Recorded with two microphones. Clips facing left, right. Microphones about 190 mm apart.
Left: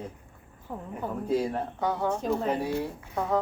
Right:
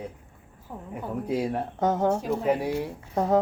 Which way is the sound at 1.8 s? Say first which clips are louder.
Right 6 dB; 45° right (ahead or behind).